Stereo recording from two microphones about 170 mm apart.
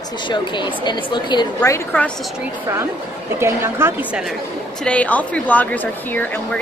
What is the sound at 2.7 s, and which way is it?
A woman's voice, 20° right (ahead or behind).